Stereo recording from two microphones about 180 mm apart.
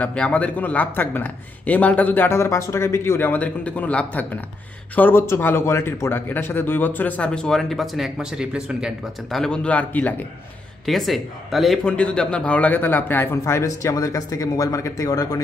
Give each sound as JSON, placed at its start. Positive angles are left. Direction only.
{"t": 0.0, "sound": "a man's voice", "side_deg": 5}